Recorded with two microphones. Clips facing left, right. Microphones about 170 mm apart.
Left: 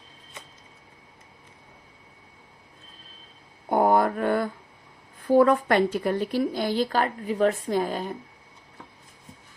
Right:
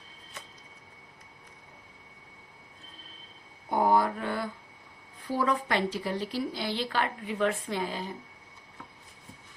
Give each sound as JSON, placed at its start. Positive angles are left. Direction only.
{"t": 3.7, "sound": "mantra", "side_deg": 55}
{"t": 5.3, "sound": "speech", "side_deg": 55}